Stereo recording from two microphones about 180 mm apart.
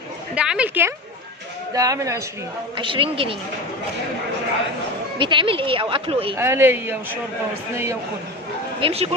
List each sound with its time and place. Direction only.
0.3 s a woman's voice: 5° right (ahead or behind)
2.7 s speech: 30° right (ahead or behind)
5.2 s speech: 25° right (ahead or behind)
6.3 s a woman's voice: 15° right (ahead or behind)
8.8 s speech: 35° right (ahead or behind)